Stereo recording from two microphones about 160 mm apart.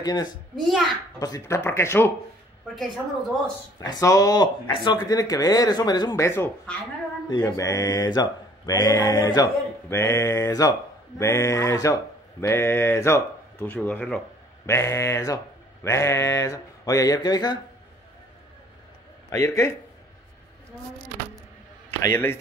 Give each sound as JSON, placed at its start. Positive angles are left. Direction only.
{"t": 0.0, "sound": "mantra", "side_deg": 25}
{"t": 1.2, "sound": "speech", "side_deg": 20}
{"t": 2.7, "sound": "a woman's voice", "side_deg": 0}
{"t": 3.8, "sound": "mantra", "side_deg": 25}
{"t": 11.1, "sound": "speech", "side_deg": 20}
{"t": 14.7, "sound": "mantra", "side_deg": 20}
{"t": 19.3, "sound": "mantra", "side_deg": 20}
{"t": 22.0, "sound": "speech", "side_deg": 15}